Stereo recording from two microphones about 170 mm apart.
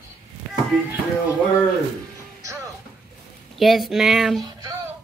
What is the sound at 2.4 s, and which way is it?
Music, 20° right (ahead or behind).